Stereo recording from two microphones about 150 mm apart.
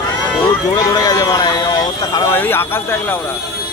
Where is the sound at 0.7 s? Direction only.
25° left (ahead or behind).